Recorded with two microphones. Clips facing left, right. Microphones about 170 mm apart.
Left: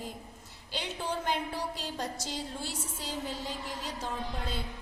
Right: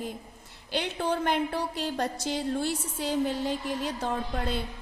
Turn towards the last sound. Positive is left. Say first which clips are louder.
# right 6 dB
turn(degrees=-60)  # may be behind; listen again after turning